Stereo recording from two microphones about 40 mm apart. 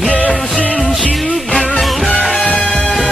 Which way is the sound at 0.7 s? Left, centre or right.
Centre.